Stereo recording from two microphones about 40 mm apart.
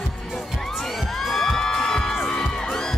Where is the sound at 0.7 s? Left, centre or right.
Centre.